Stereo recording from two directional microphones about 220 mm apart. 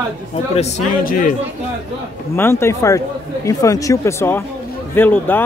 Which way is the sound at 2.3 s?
10° left (ahead or behind).